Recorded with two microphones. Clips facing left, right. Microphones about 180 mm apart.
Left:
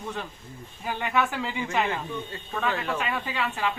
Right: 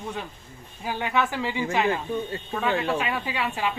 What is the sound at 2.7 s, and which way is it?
Speech, 30° right (ahead or behind).